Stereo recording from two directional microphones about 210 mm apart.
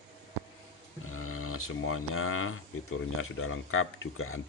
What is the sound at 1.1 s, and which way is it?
Speech, 90° left.